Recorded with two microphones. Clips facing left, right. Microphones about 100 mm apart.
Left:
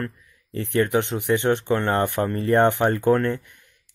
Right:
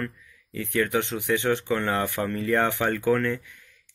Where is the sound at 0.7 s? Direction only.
20° left (ahead or behind).